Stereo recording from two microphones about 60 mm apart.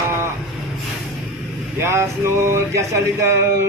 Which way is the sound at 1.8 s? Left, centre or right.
Right.